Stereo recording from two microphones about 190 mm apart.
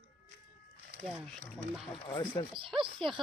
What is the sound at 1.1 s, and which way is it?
Speech, 5° right (ahead or behind).